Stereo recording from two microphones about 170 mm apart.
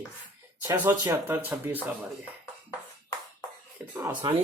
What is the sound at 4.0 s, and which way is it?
Speech, 30° right (ahead or behind).